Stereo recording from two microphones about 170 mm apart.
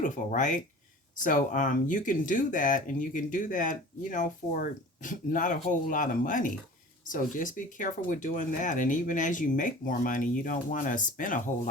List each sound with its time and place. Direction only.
0.0 s speech: 45° left (ahead or behind)